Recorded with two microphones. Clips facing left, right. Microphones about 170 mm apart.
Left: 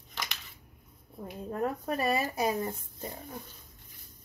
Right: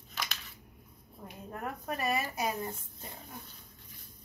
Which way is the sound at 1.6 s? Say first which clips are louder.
Left 6 dB; 30° left (ahead or behind).